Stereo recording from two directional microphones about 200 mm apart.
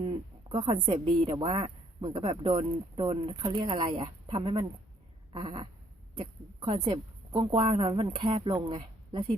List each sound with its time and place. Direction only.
0.0 s a woman's voice: 25° right (ahead or behind)